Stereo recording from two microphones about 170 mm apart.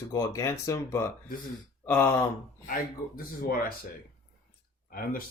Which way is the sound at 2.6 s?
55° left (ahead or behind).